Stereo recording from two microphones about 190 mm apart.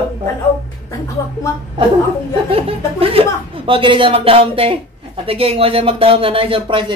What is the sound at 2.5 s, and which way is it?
Speech, 30° right (ahead or behind).